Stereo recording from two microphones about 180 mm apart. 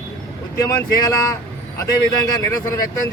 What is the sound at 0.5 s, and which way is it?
A man's voice, 20° left (ahead or behind).